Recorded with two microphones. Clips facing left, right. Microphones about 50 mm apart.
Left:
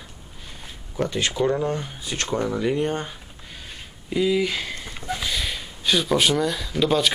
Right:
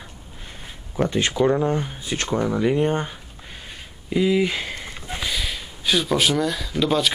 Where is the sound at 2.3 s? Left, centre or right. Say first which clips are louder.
Right 3 dB; centre.